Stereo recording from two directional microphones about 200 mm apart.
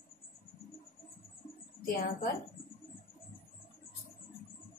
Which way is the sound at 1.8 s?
45° left (ahead or behind).